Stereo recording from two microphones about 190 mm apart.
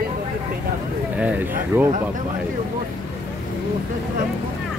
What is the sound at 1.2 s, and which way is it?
Speech, 10° right (ahead or behind).